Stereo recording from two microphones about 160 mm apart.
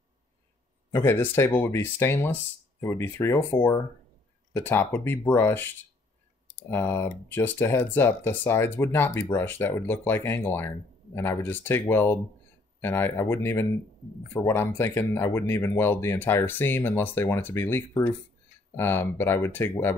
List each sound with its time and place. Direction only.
0.9 s speech: 15° left (ahead or behind)
6.7 s speech: 15° left (ahead or behind)